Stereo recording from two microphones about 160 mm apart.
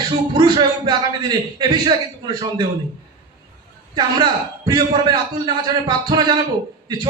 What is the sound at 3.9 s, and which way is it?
A man's voice, 25° right (ahead or behind).